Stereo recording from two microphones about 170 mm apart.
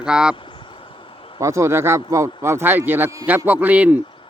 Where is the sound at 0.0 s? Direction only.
5° right (ahead or behind).